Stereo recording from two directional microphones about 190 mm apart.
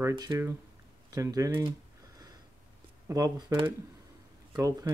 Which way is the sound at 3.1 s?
20° right (ahead or behind).